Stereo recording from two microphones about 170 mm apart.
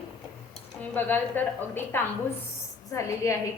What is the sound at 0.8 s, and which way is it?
A woman's voice, 10° left (ahead or behind).